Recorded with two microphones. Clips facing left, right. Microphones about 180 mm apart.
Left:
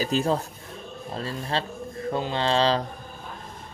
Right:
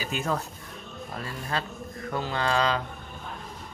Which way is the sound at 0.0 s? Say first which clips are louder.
Left 6 dB; 35° left (ahead or behind).